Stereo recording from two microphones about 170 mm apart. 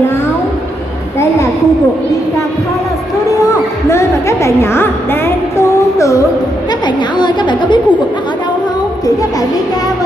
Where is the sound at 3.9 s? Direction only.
15° left (ahead or behind).